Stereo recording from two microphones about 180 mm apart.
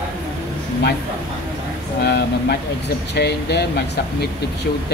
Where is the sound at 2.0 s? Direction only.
60° left (ahead or behind).